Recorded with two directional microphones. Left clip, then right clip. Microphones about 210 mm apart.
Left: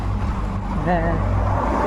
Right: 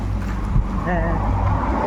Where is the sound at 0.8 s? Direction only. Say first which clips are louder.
Left 2 dB; 30° left (ahead or behind).